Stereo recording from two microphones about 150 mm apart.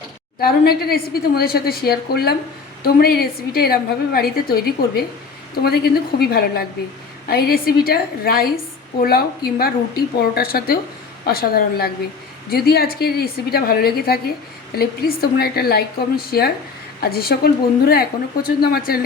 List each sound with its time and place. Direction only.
0.3 s a woman's voice: 90° left